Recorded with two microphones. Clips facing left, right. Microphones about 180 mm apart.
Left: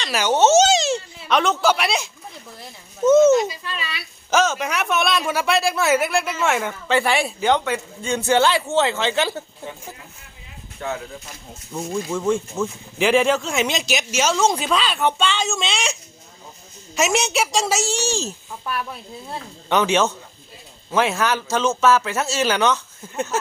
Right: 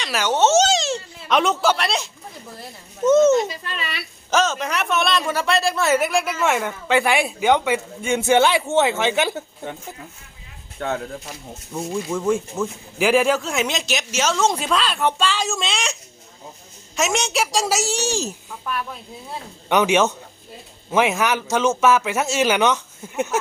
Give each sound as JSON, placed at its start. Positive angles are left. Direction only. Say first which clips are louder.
{"t": 0.0, "sound": "a sound", "louder": "left 1 dB", "side_deg": 0}
{"t": 1.7, "sound": "speech", "louder": "left 1 dB", "side_deg": 5}
{"t": 6.8, "sound": "a man's voice", "louder": "right 1 dB", "side_deg": -10}
{"t": 10.8, "sound": "speech", "louder": "right 3 dB", "side_deg": -60}
{"t": 11.7, "sound": "speech", "louder": "even", "side_deg": 0}
{"t": 17.8, "sound": "speech", "louder": "even", "side_deg": -15}
{"t": 18.6, "sound": "speech", "louder": "even", "side_deg": 5}
{"t": 19.6, "sound": "speech", "louder": "right 1 dB", "side_deg": -15}